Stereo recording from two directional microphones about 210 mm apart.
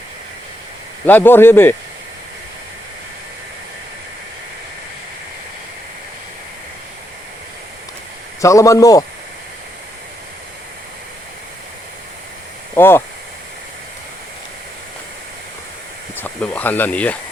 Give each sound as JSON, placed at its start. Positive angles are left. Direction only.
{"t": 1.0, "sound": "a man's voice", "side_deg": 10}
{"t": 8.4, "sound": "a man's voice", "side_deg": 15}
{"t": 12.7, "sound": "speech", "side_deg": 10}
{"t": 16.1, "sound": "speech", "side_deg": 10}